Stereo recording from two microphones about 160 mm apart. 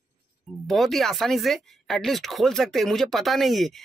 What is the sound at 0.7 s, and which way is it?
Speech, centre (ahead or behind).